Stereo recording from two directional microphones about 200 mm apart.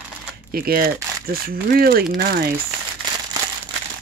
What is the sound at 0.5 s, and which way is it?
Speech, 45° right (ahead or behind).